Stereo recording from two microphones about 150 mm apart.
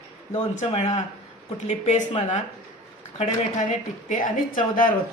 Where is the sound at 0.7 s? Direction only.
45° left (ahead or behind).